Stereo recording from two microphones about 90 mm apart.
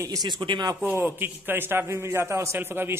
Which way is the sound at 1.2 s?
25° right (ahead or behind).